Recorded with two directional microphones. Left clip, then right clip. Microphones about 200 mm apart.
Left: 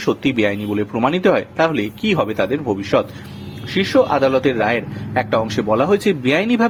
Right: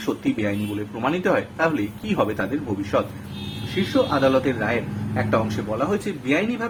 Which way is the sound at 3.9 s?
40° left (ahead or behind).